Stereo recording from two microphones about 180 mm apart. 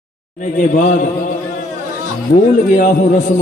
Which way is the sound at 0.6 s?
45° left (ahead or behind).